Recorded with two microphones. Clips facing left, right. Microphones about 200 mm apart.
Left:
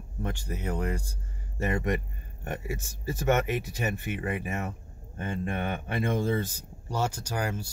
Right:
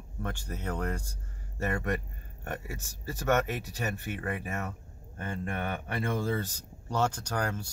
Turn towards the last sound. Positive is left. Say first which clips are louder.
# left 1 dB
turn(degrees=10)  # may be behind; listen again after turning